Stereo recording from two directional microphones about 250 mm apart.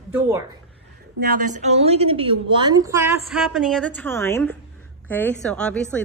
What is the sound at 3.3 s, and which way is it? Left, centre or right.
A woman's voice, centre.